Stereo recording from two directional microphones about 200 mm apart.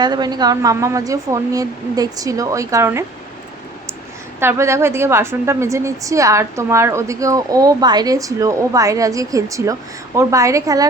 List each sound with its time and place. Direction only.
0.0 s a woman's voice: 20° right (ahead or behind)
4.4 s a woman's voice: 15° right (ahead or behind)